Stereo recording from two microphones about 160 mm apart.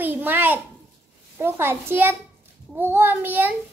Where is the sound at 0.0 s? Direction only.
10° right (ahead or behind).